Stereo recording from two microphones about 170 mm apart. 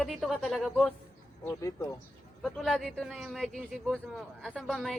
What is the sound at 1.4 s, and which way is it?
Speech, 20° left (ahead or behind).